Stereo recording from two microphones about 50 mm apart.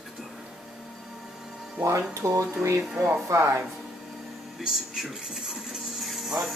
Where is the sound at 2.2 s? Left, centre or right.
Right.